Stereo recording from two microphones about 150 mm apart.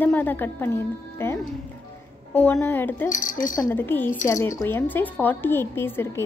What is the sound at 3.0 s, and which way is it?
Speech, 60° left (ahead or behind).